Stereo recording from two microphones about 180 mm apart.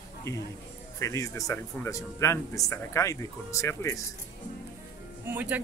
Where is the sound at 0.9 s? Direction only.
15° left (ahead or behind).